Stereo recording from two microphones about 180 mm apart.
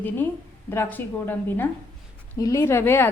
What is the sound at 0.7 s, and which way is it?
A woman's voice, 10° left (ahead or behind).